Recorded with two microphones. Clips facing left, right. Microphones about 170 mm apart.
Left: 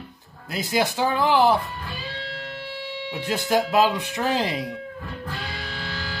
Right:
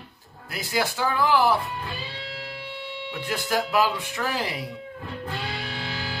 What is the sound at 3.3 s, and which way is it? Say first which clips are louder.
Speech: left 4 dB; 20° left (ahead or behind).